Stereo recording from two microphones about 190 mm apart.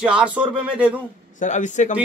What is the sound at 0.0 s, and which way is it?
Speech, 5° right (ahead or behind).